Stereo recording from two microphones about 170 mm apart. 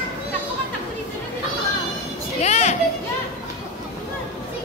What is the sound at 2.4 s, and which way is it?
Speech, 40° left (ahead or behind).